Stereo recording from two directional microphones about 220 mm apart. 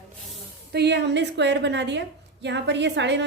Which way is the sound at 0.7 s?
50° right (ahead or behind).